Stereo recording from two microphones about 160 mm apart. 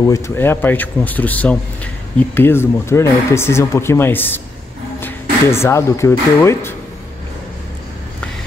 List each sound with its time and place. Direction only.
0.0 s speech: 20° left (ahead or behind)
5.5 s speech: 15° left (ahead or behind)